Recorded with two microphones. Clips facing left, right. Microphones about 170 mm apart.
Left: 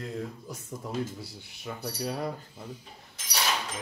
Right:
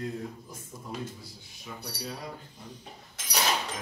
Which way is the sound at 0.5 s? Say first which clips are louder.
Left 4 dB; 75° left (ahead or behind).